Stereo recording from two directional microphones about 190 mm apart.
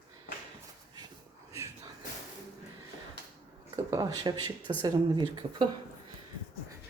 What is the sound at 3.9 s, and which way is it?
Speech, 20° right (ahead or behind).